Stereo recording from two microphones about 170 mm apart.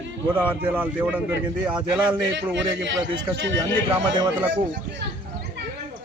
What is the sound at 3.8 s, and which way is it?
Speech, 25° right (ahead or behind).